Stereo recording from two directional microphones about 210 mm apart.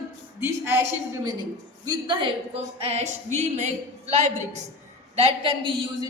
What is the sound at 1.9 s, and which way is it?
A woman's voice, 20° right (ahead or behind).